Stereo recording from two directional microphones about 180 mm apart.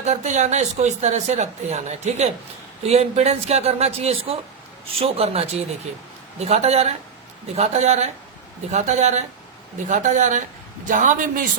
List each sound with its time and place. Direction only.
0.0 s speech: 40° right (ahead or behind)